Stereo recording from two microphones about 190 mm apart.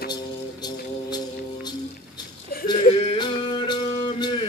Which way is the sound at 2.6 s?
25° left (ahead or behind).